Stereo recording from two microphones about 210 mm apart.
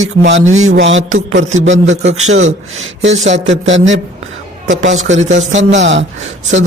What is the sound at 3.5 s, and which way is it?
Speech, 60° right (ahead or behind).